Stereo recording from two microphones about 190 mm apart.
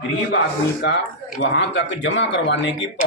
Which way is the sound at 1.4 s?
70° left (ahead or behind).